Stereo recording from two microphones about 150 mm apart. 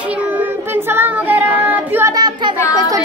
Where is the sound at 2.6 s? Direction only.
20° left (ahead or behind).